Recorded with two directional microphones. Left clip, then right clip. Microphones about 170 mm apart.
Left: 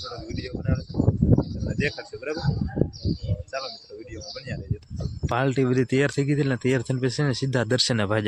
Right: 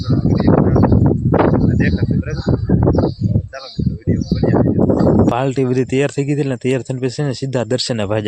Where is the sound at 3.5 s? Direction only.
5° left (ahead or behind).